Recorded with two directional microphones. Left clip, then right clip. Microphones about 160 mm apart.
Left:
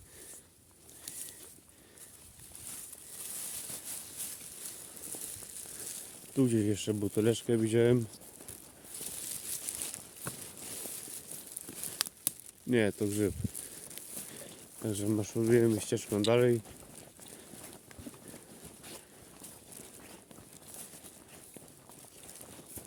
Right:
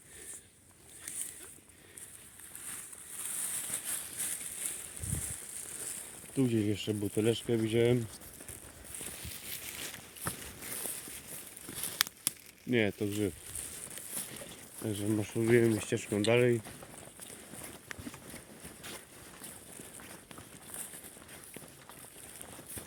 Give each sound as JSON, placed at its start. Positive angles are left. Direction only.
{"t": 6.3, "sound": "speech", "side_deg": 25}
{"t": 11.9, "sound": "a sound", "side_deg": -15}
{"t": 12.7, "sound": "speech", "side_deg": 35}
{"t": 14.8, "sound": "speech", "side_deg": 15}
{"t": 16.0, "sound": "speech", "side_deg": 20}